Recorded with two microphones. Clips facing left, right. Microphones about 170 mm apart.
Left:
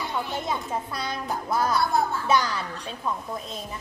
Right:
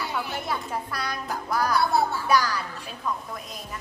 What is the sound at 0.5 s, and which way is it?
Speech, 20° left (ahead or behind).